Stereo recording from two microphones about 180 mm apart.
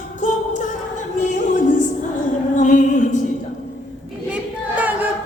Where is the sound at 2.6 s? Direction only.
45° left (ahead or behind).